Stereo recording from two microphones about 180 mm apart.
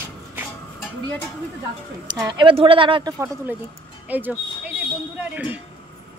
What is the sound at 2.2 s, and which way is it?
A woman's voice, 25° right (ahead or behind).